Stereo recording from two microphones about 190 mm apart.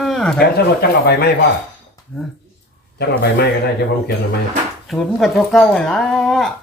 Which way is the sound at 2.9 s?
60° left (ahead or behind).